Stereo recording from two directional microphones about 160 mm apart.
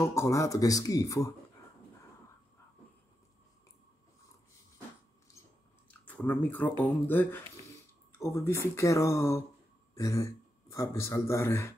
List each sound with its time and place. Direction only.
0.0 s speech: 20° left (ahead or behind)
6.0 s a man's voice: 10° left (ahead or behind)